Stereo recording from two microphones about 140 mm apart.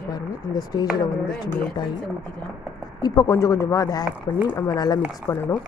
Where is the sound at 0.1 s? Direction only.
30° left (ahead or behind).